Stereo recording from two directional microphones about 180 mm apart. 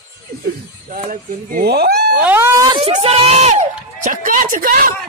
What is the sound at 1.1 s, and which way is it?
Speech, 60° right (ahead or behind).